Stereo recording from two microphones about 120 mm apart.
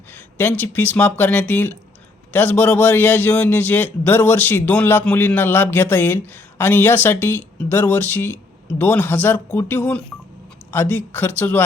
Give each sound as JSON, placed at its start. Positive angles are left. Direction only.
{"t": 0.1, "sound": "a man's voice", "side_deg": 15}